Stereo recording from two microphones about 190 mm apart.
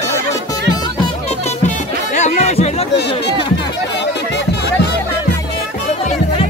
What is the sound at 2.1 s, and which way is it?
Chatter, 35° left (ahead or behind).